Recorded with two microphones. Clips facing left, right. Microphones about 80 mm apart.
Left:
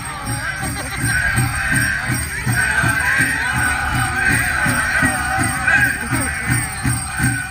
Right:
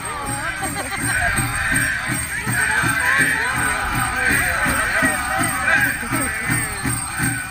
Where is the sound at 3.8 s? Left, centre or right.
Centre.